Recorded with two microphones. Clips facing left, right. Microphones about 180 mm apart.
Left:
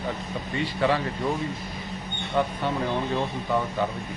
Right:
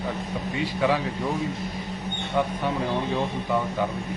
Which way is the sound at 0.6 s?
10° right (ahead or behind).